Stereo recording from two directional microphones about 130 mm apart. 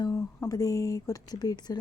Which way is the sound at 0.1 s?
20° left (ahead or behind).